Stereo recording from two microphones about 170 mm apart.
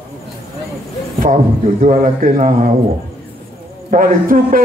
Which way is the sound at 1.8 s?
50° right (ahead or behind).